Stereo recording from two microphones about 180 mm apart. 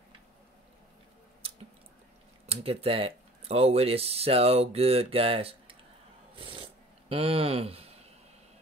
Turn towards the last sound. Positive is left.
turn(degrees=-35)  # may be behind; listen again after turning